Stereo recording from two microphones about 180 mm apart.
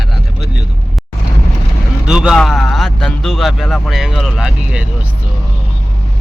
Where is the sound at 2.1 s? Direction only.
5° right (ahead or behind).